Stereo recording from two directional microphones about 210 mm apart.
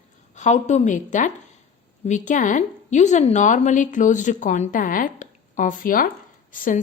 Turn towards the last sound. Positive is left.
turn(degrees=40)  # may be behind; listen again after turning